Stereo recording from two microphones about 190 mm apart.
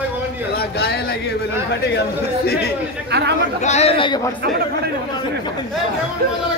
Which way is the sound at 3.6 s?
35° left (ahead or behind).